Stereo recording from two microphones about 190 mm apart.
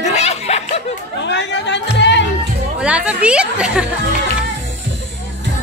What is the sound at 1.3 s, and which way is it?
Music, 65° left (ahead or behind).